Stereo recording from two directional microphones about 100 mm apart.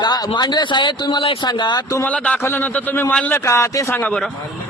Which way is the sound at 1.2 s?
65° left (ahead or behind).